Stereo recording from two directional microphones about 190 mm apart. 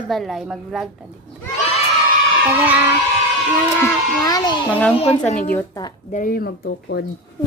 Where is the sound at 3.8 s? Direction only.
20° left (ahead or behind).